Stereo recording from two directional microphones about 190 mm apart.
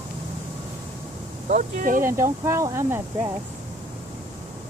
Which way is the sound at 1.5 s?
45° right (ahead or behind).